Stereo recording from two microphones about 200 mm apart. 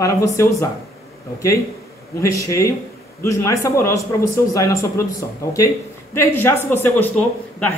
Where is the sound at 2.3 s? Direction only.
15° left (ahead or behind).